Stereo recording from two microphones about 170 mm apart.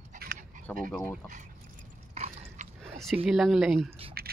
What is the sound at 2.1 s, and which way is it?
Mechanisms, 40° right (ahead or behind).